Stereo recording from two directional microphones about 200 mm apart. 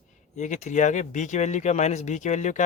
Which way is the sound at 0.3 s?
35° left (ahead or behind).